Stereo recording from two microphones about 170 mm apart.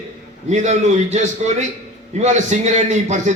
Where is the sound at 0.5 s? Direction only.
45° right (ahead or behind).